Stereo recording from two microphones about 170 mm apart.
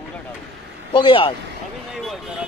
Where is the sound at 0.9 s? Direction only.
30° left (ahead or behind).